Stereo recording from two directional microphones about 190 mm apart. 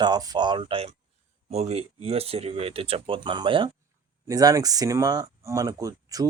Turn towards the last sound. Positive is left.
turn(degrees=-20)  # may be behind; listen again after turning